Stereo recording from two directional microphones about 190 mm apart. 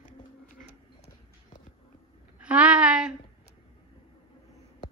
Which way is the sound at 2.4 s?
5° right (ahead or behind).